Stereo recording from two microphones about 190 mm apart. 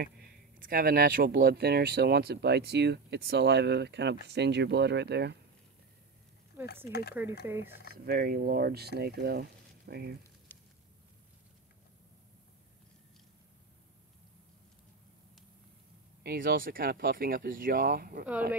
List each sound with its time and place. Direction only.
0.0 s speech: 50° right (ahead or behind)
6.9 s speech: 60° left (ahead or behind)
7.4 s speech: 10° right (ahead or behind)
7.9 s speech: 55° right (ahead or behind)
10.5 s a sound: 10° left (ahead or behind)
16.2 s speech: 55° right (ahead or behind)